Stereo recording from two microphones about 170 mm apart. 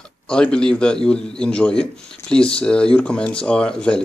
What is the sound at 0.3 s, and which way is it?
Speech, 5° left (ahead or behind).